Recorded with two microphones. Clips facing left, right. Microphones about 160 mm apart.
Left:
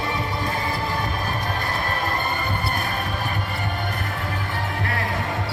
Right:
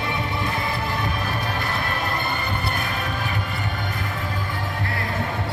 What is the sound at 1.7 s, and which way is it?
Music, 40° left (ahead or behind).